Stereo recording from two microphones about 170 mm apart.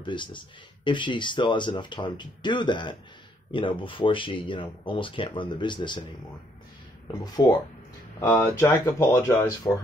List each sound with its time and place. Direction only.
0.0 s speech: 30° left (ahead or behind)
7.1 s speech: 25° left (ahead or behind)